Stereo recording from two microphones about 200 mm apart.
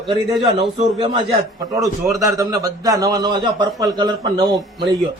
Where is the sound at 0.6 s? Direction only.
30° right (ahead or behind).